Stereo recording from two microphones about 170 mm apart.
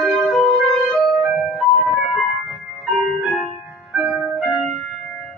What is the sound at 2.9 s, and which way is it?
Keyboard, centre (ahead or behind).